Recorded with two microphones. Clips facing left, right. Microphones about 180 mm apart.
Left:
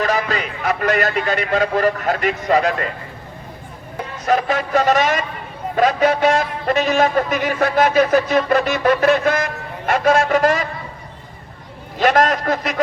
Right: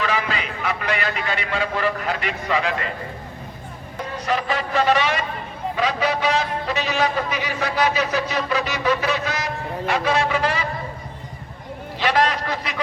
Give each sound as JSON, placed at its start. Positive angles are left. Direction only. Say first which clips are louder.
{"t": 0.0, "sound": "a man's voice", "louder": "left 4 dB", "side_deg": 45}
{"t": 4.3, "sound": "a man's voice", "louder": "left 6 dB", "side_deg": 45}
{"t": 11.9, "sound": "a man's voice", "louder": "left 5 dB", "side_deg": 45}